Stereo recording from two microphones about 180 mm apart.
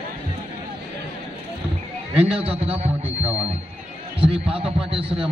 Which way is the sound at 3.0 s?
10° right (ahead or behind).